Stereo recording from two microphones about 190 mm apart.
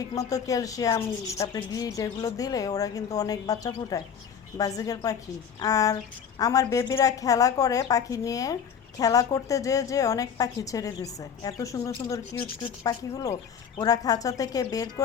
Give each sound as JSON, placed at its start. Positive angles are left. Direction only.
{"t": 0.0, "sound": "a woman's voice", "side_deg": 20}